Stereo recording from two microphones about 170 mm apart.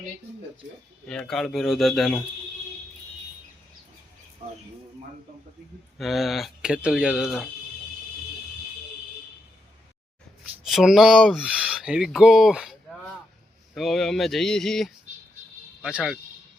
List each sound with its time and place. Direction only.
1.0 s speech: 5° left (ahead or behind)
4.4 s speech: 40° right (ahead or behind)
6.0 s speech: centre (ahead or behind)
10.7 s speech: centre (ahead or behind)
13.7 s speech: centre (ahead or behind)